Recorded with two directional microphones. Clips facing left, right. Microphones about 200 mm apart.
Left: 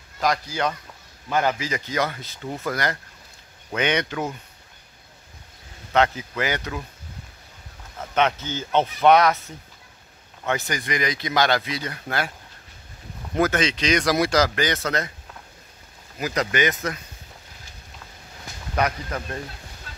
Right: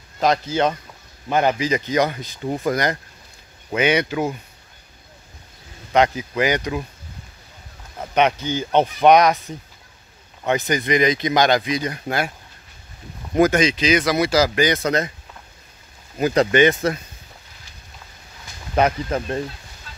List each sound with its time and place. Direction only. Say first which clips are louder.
0.2 s speech: right 5 dB; 25° right (ahead or behind)
5.9 s speech: right 4 dB; 15° right (ahead or behind)
8.0 s speech: right 4 dB; 15° right (ahead or behind)
13.3 s speech: right 5 dB; 15° right (ahead or behind)
16.2 s speech: right 8 dB; 30° right (ahead or behind)
18.8 s speech: right 6 dB; 25° right (ahead or behind)